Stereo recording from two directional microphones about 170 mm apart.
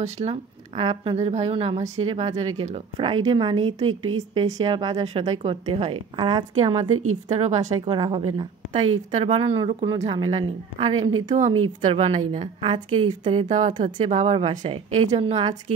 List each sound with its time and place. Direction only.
0.0 s a woman's voice: 40° right (ahead or behind)
7.2 s a woman's voice: 45° right (ahead or behind)
7.8 s a woman's voice: 30° right (ahead or behind)
13.5 s a woman's voice: 45° right (ahead or behind)
13.7 s a woman's voice: 35° right (ahead or behind)